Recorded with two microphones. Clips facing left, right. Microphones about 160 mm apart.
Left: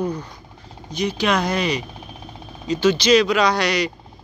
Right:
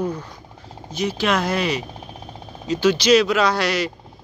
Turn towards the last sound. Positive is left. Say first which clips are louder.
# left 1 dB
turn(degrees=-5)  # may be behind; listen again after turning